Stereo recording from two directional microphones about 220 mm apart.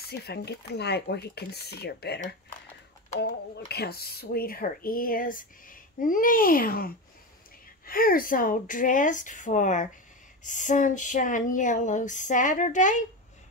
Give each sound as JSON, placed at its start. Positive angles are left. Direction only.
{"t": 0.0, "sound": "speech", "side_deg": 45}
{"t": 3.5, "sound": "speech", "side_deg": 45}